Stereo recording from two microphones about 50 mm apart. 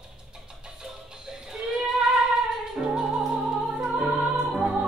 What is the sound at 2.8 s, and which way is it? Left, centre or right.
Music, centre.